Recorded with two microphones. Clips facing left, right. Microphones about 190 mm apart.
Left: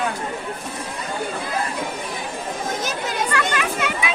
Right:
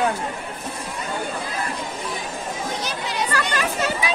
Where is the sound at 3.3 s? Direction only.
40° right (ahead or behind).